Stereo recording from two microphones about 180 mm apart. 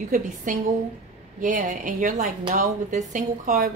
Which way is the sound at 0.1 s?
45° right (ahead or behind).